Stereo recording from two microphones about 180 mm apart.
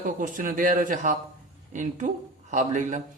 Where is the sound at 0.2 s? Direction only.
50° right (ahead or behind).